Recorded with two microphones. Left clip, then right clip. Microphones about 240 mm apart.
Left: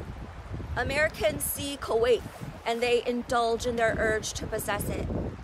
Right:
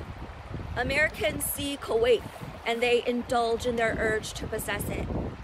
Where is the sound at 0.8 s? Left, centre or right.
Centre.